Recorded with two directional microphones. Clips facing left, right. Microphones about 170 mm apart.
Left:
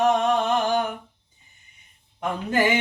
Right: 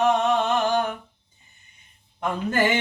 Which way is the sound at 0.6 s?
15° left (ahead or behind).